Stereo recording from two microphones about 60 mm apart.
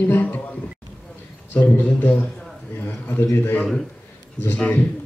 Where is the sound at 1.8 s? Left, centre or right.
Left.